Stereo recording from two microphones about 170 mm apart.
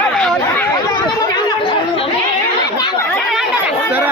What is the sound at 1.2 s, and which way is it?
Chatter, 25° left (ahead or behind).